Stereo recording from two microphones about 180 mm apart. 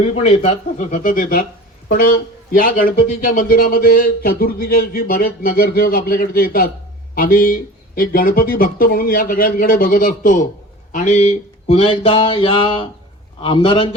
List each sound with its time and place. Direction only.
0.0 s speech: 35° left (ahead or behind)
10.9 s a sound: 40° left (ahead or behind)
13.4 s a man's voice: 30° left (ahead or behind)